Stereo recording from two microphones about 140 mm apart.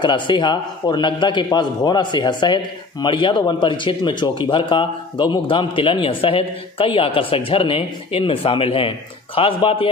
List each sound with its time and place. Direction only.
0.0 s a man's voice: 35° left (ahead or behind)